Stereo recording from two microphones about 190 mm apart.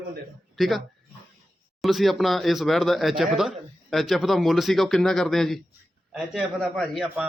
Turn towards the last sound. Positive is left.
turn(degrees=0)  # may be behind; listen again after turning